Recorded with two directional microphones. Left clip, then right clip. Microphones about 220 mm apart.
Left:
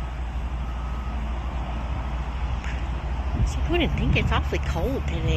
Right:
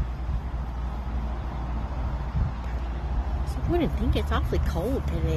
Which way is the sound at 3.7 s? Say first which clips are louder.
Left 3 dB; 10° right (ahead or behind).